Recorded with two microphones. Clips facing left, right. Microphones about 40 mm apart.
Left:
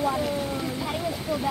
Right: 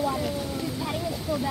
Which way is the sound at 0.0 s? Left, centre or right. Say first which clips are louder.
Left 2 dB; left.